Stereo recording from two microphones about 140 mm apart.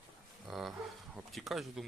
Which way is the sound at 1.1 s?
Centre (ahead or behind).